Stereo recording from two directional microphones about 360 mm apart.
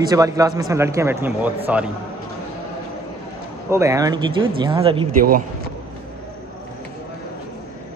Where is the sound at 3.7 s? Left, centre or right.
Centre.